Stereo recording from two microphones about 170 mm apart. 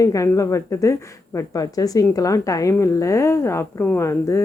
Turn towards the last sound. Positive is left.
turn(degrees=15)  # may be behind; listen again after turning